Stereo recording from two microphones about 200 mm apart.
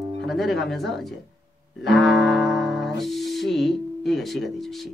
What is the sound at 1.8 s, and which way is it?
Music, centre (ahead or behind).